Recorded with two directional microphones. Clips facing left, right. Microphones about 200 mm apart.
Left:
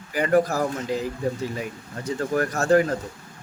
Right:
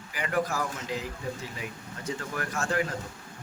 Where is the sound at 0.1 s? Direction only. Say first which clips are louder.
Left 9 dB; 40° left (ahead or behind).